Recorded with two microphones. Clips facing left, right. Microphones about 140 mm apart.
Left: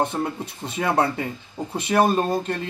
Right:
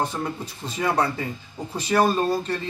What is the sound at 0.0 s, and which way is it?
Speech, 25° left (ahead or behind).